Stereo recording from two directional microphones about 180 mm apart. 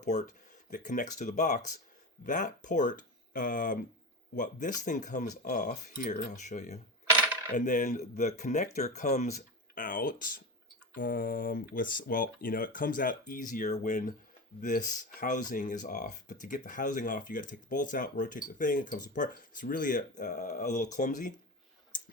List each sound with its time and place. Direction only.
0.0 s speech: 40° left (ahead or behind)